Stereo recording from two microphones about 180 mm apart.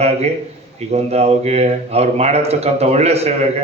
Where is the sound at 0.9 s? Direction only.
35° right (ahead or behind).